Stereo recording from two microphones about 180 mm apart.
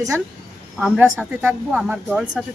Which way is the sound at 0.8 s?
5° right (ahead or behind).